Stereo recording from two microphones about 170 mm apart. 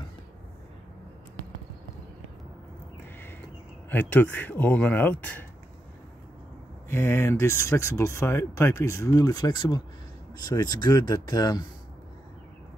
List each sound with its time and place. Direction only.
3.9 s speech: 10° left (ahead or behind)
6.9 s speech: 15° left (ahead or behind)